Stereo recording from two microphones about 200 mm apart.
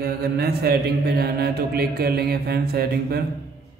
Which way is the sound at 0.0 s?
50° right (ahead or behind).